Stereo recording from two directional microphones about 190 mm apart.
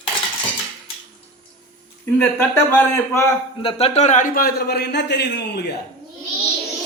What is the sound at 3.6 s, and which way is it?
A man's voice, 30° left (ahead or behind).